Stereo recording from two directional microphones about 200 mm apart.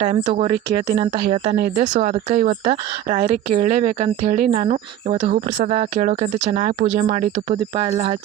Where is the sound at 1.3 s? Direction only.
35° right (ahead or behind).